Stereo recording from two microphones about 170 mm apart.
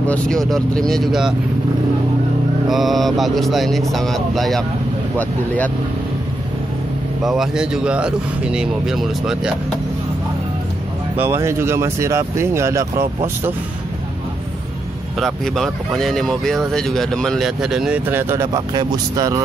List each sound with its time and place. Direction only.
0.0 s speech: 5° left (ahead or behind)
2.7 s speech: centre (ahead or behind)
7.2 s speech: 5° right (ahead or behind)
11.1 s speech: 15° right (ahead or behind)
15.1 s speech: centre (ahead or behind); by 19.4 s 20° right (ahead or behind)